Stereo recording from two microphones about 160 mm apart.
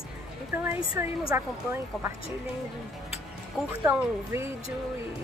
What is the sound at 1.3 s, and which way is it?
Speech, 15° right (ahead or behind).